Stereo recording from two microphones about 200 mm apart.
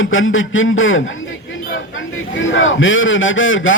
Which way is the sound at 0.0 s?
75° left (ahead or behind).